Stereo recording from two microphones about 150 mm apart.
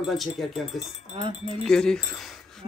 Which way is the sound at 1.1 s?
35° right (ahead or behind).